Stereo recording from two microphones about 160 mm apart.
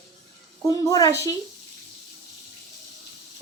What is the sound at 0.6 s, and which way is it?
Speech, 20° left (ahead or behind).